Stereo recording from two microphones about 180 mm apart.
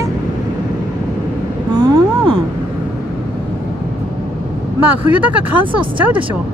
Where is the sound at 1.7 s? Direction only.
20° right (ahead or behind).